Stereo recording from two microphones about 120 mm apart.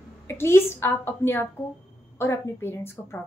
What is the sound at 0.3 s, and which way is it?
A woman's voice, 20° left (ahead or behind).